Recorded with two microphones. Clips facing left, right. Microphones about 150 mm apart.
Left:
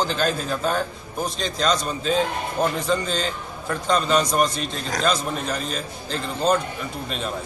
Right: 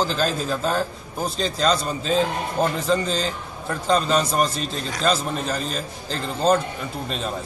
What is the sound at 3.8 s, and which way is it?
A man's voice, 30° right (ahead or behind).